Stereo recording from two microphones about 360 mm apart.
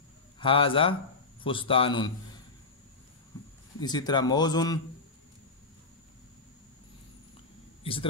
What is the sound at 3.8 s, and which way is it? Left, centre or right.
A man's voice, centre.